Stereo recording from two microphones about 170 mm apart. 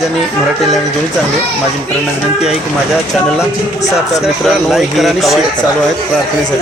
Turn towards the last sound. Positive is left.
turn(degrees=0)  # may be behind; listen again after turning